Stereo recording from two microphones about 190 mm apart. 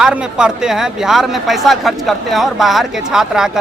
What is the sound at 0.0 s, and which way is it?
Speech, 5° right (ahead or behind).